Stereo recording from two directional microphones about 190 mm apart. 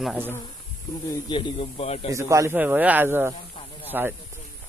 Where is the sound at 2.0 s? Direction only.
15° right (ahead or behind).